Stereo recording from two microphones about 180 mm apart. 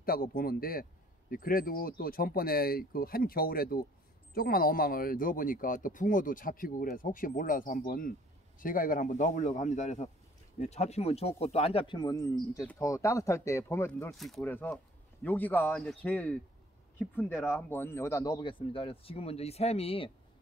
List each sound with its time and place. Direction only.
0.0 s speech: 55° left (ahead or behind); by 14.1 s 15° left (ahead or behind)
14.1 s speech: centre (ahead or behind); by 20.1 s 35° left (ahead or behind)